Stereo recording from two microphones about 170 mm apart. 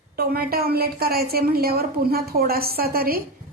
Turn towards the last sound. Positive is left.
turn(degrees=-60)  # may be behind; listen again after turning